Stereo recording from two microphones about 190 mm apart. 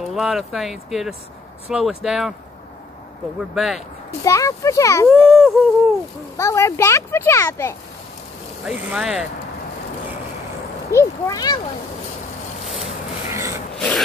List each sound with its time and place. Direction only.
0.1 s speech: centre (ahead or behind)
3.5 s speech: centre (ahead or behind)
4.2 s a child's voice: 15° left (ahead or behind)
5.0 s speech: centre (ahead or behind)
6.3 s a child's voice: 15° left (ahead or behind)
8.6 s speech: 5° right (ahead or behind)
10.9 s a child's voice: 15° left (ahead or behind)
13.3 s a sound: 15° right (ahead or behind)
13.7 s mechanisms: 5° left (ahead or behind)